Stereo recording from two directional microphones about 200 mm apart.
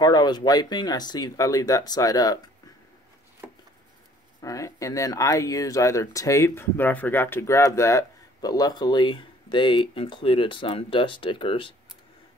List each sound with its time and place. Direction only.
0.0 s speech: 20° left (ahead or behind)
3.4 s a sound: 10° right (ahead or behind)
4.4 s speech: 15° left (ahead or behind)